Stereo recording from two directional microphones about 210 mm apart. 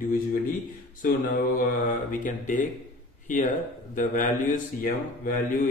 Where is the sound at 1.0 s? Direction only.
40° left (ahead or behind).